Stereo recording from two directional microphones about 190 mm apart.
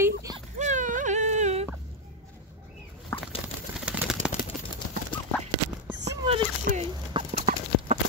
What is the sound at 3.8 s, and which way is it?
Bird, 5° right (ahead or behind).